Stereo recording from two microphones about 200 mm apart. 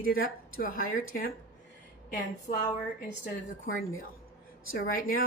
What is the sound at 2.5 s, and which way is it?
Speech, 30° left (ahead or behind).